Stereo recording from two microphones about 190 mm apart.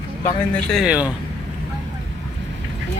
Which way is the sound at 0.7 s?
5° right (ahead or behind).